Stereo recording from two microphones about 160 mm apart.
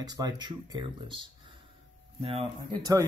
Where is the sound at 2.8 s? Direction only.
20° right (ahead or behind).